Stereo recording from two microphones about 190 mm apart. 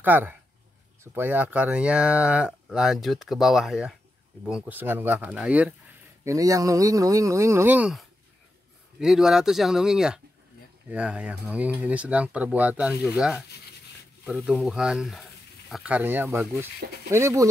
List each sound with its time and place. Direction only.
0.0 s speech: 10° right (ahead or behind)
6.2 s speech: 15° right (ahead or behind)